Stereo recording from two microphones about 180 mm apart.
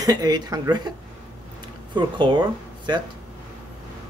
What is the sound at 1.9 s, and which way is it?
Speech, 25° right (ahead or behind).